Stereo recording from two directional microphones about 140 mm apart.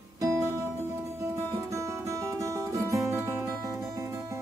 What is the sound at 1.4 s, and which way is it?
Music, 20° right (ahead or behind).